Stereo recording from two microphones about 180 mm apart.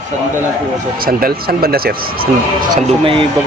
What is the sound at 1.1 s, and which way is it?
Speech, 55° right (ahead or behind).